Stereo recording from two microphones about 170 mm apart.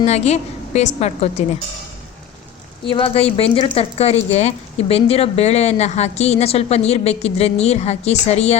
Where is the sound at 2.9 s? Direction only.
30° left (ahead or behind).